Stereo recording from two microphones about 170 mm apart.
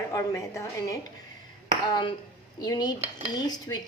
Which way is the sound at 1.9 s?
30° left (ahead or behind).